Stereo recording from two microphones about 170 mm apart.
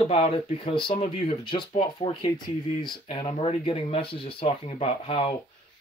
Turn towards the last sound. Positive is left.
turn(degrees=30)  # may be behind; listen again after turning